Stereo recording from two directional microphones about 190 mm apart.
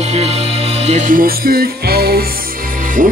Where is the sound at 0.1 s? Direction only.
35° right (ahead or behind).